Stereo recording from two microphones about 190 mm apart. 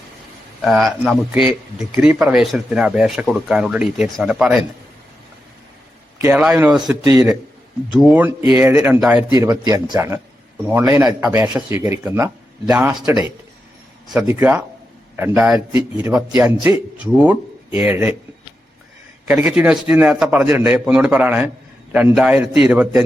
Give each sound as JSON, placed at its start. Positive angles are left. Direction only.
{"t": 0.6, "sound": "speech", "side_deg": 0}
{"t": 6.1, "sound": "a man's voice", "side_deg": -10}
{"t": 7.0, "sound": "a man's voice", "side_deg": -15}
{"t": 7.9, "sound": "a man's voice", "side_deg": -5}
{"t": 9.3, "sound": "a man's voice", "side_deg": -20}
{"t": 14.2, "sound": "a man's voice", "side_deg": -15}
{"t": 19.3, "sound": "a man's voice", "side_deg": -5}